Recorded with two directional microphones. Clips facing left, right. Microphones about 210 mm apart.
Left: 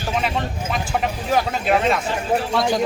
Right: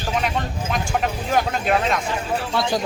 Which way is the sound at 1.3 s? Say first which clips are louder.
Left 1 dB; centre (ahead or behind).